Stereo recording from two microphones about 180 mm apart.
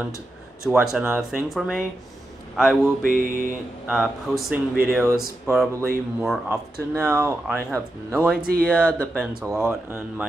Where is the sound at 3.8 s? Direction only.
Centre (ahead or behind).